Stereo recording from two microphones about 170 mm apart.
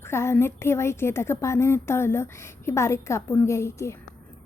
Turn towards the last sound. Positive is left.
turn(degrees=15)  # may be behind; listen again after turning